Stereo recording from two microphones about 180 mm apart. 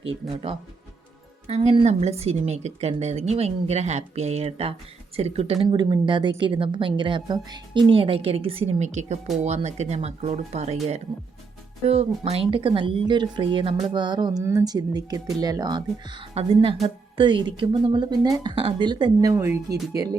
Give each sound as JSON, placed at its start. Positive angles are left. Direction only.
{"t": 0.0, "sound": "a woman's voice", "side_deg": -30}
{"t": 11.9, "sound": "speech", "side_deg": -30}
{"t": 16.3, "sound": "a woman's voice", "side_deg": -35}
{"t": 19.3, "sound": "speech", "side_deg": -15}